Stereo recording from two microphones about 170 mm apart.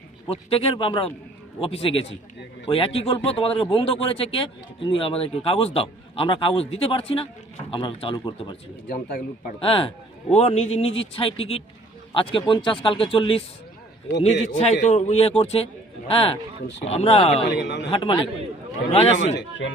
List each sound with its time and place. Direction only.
0.3 s a man's voice: 35° left (ahead or behind)
8.9 s speech: 60° left (ahead or behind)
9.6 s a man's voice: 30° left (ahead or behind)
14.4 s a man's voice: 40° left (ahead or behind)
17.4 s speech: 75° left (ahead or behind)
17.9 s a man's voice: 30° left (ahead or behind)
19.4 s speech: 90° left